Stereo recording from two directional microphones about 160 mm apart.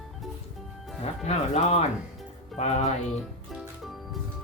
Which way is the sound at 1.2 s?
40° left (ahead or behind).